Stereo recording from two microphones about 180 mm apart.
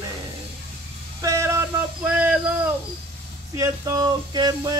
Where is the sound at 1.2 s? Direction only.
15° right (ahead or behind).